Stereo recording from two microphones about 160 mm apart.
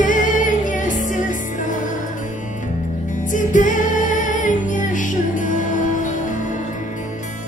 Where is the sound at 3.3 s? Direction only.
55° left (ahead or behind).